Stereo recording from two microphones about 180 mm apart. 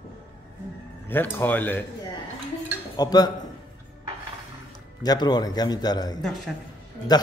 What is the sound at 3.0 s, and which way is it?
Speech, 20° left (ahead or behind).